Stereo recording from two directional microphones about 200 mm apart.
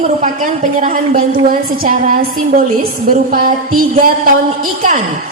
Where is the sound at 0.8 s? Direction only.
40° right (ahead or behind).